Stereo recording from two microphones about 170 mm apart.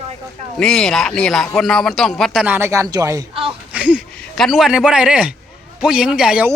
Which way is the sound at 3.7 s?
5° right (ahead or behind).